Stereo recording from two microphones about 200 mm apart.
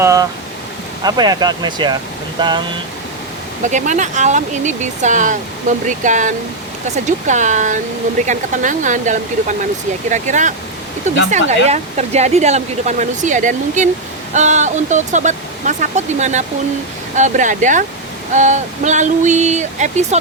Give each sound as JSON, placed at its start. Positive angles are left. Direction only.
{"t": 0.0, "sound": "speech", "side_deg": -15}
{"t": 3.6, "sound": "speech", "side_deg": -35}